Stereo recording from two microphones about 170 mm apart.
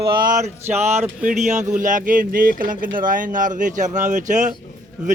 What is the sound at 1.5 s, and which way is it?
Speech, 45° right (ahead or behind).